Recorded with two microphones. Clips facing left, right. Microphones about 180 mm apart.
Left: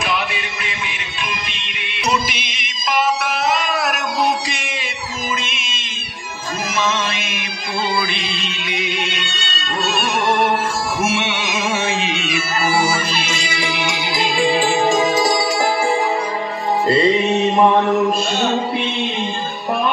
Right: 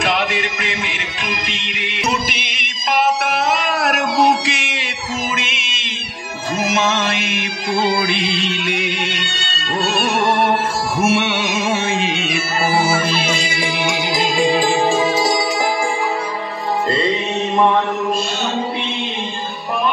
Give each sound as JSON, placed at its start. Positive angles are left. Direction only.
{"t": 0.0, "sound": "music", "side_deg": -90}
{"t": 2.0, "sound": "music", "side_deg": -55}
{"t": 11.0, "sound": "music", "side_deg": -60}